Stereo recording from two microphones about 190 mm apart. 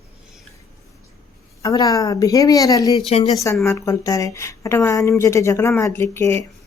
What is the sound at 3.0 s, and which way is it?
Speech, 30° left (ahead or behind).